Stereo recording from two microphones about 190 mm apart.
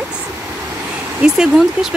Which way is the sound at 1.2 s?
5° right (ahead or behind).